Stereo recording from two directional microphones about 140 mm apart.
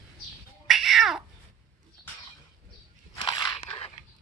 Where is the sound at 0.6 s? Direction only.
Centre (ahead or behind).